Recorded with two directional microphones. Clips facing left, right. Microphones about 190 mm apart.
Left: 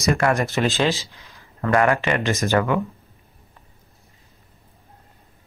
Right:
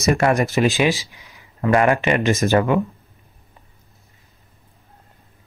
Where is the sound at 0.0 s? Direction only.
20° right (ahead or behind).